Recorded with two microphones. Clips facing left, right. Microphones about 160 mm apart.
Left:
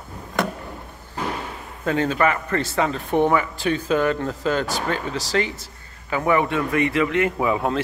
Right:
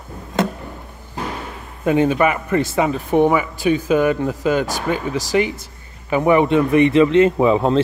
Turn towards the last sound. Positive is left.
turn(degrees=-25)  # may be behind; listen again after turning